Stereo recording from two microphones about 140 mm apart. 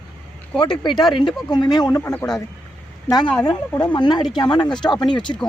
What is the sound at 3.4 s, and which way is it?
Speech, 30° left (ahead or behind).